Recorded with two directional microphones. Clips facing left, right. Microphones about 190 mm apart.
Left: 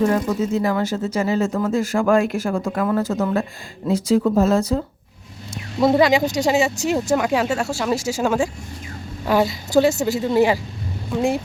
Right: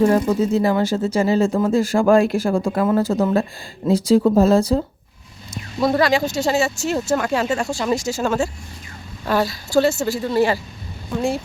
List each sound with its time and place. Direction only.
0.1 s speech: 30° right (ahead or behind)
5.8 s speech: 20° left (ahead or behind)